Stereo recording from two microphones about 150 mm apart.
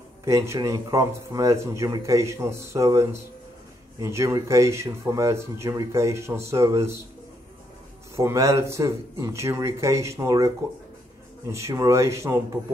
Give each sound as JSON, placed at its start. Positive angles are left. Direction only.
{"t": 0.2, "sound": "speech", "side_deg": -20}
{"t": 8.2, "sound": "speech", "side_deg": -20}